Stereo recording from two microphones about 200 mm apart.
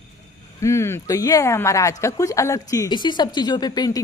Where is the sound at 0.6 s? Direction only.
15° left (ahead or behind).